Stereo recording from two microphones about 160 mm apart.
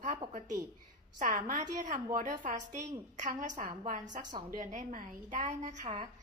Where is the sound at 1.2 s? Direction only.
55° right (ahead or behind).